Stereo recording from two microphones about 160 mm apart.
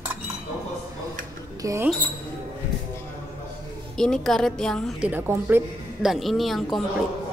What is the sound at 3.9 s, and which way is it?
Speech, 5° left (ahead or behind).